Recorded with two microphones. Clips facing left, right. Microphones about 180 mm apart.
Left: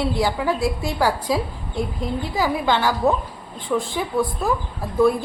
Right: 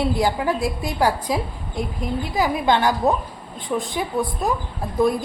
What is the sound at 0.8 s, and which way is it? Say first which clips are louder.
A woman's voice: even; 20° right (ahead or behind).